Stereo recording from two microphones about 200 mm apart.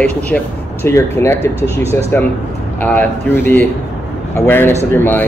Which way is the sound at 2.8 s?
10° left (ahead or behind).